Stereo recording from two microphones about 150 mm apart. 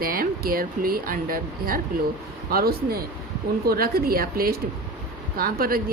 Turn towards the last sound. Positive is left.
turn(degrees=-80)